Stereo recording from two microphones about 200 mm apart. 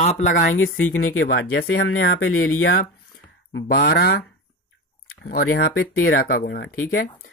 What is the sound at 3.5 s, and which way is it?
Speech, 55° left (ahead or behind).